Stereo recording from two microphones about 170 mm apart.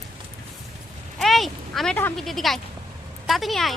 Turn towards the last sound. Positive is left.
turn(degrees=0)  # may be behind; listen again after turning